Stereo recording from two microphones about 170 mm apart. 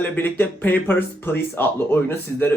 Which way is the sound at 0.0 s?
10° left (ahead or behind).